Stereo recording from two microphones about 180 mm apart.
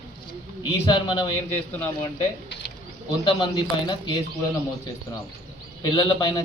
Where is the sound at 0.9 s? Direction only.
25° left (ahead or behind).